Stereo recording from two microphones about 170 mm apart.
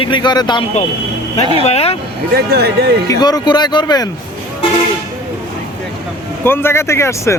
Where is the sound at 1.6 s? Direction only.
35° left (ahead or behind).